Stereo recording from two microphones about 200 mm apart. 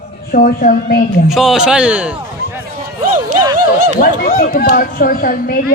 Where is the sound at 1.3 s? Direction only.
Centre (ahead or behind).